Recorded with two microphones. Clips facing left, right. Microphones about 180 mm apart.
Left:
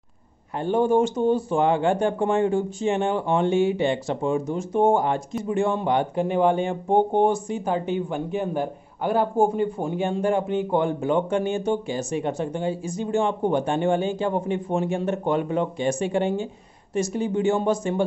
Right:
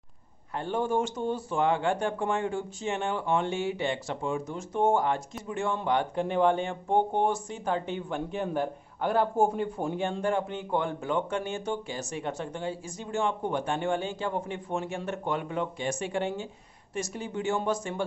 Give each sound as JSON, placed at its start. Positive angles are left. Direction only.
{"t": 0.6, "sound": "speech", "side_deg": 20}
{"t": 4.6, "sound": "speech", "side_deg": 15}
{"t": 6.1, "sound": "speech", "side_deg": 5}
{"t": 7.5, "sound": "speech", "side_deg": 10}